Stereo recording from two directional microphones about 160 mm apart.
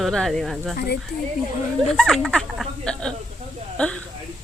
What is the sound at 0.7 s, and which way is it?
Speech, 90° left.